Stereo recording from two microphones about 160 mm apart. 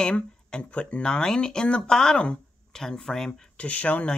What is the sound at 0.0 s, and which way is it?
Speech, 5° left (ahead or behind).